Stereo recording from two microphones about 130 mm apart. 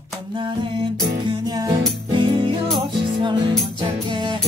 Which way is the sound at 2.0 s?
40° right (ahead or behind).